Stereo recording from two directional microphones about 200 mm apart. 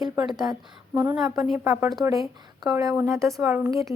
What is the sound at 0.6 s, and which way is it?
Speech, centre (ahead or behind).